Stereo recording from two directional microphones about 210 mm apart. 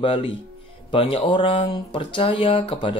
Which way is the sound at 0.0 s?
25° left (ahead or behind).